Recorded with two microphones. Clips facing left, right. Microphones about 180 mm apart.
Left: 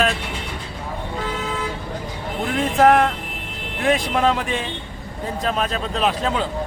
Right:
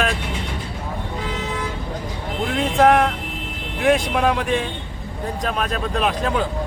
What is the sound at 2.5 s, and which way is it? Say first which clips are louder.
Speech: even; centre (ahead or behind).